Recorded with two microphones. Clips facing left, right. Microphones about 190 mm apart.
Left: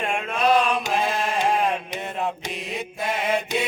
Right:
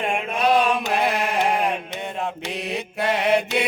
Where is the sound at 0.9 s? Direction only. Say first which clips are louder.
Right 2 dB; 70° right (ahead or behind).